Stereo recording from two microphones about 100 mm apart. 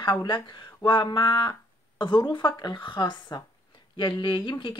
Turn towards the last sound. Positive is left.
turn(degrees=50)  # may be behind; listen again after turning